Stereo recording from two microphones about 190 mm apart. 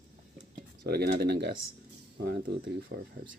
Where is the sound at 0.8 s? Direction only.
55° right (ahead or behind).